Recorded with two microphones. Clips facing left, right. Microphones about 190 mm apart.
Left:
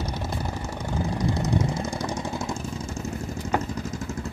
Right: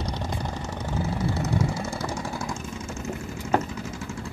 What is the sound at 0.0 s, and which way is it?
Vehicle, 5° left (ahead or behind).